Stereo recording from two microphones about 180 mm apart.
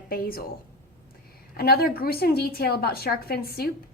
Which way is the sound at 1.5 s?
60° left (ahead or behind).